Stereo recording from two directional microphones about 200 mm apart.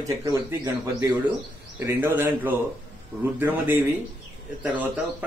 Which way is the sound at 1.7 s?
10° right (ahead or behind).